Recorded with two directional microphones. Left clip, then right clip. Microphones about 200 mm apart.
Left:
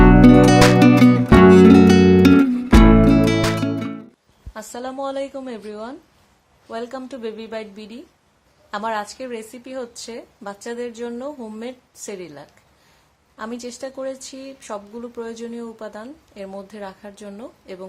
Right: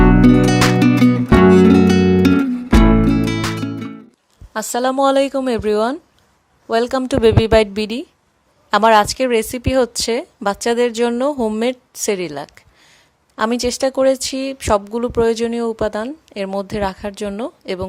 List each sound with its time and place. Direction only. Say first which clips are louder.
0.0 s music: left 1 dB; centre (ahead or behind)
4.5 s speech: right 12 dB; 50° right (ahead or behind)